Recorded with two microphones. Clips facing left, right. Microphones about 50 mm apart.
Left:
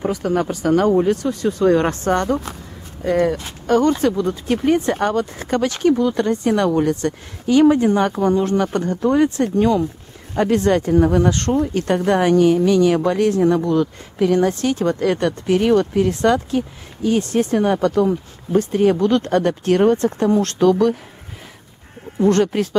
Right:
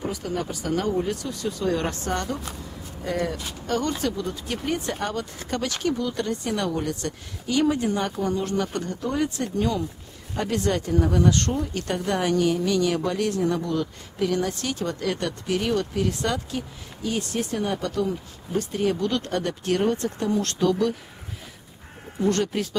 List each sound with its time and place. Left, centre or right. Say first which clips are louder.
0.0 s a woman's voice: left 9 dB; left
22.3 s a woman's voice: left 8 dB; left